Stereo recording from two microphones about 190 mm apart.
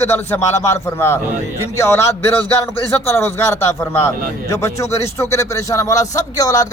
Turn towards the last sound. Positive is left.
turn(degrees=15)  # may be behind; listen again after turning